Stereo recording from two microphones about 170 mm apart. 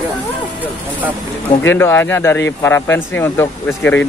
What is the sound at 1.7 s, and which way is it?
Speech, 15° left (ahead or behind).